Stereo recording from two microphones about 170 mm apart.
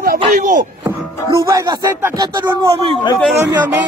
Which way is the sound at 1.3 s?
20° right (ahead or behind).